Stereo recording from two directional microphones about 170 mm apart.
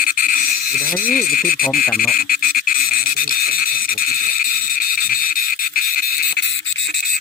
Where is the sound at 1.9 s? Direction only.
55° left (ahead or behind).